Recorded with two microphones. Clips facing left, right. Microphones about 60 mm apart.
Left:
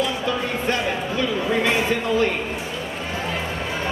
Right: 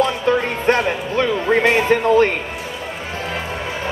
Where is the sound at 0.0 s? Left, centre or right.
Right.